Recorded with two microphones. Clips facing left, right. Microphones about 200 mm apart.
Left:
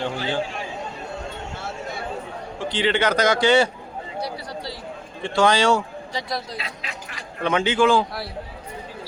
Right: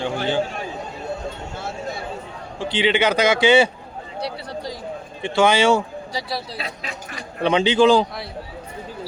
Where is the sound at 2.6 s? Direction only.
25° right (ahead or behind).